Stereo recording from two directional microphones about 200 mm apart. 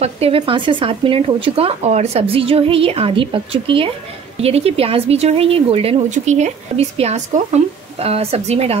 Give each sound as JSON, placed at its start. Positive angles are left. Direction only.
{"t": 0.0, "sound": "speech", "side_deg": -30}